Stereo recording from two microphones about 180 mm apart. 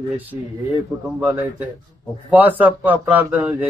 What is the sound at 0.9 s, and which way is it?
Speech, 20° right (ahead or behind).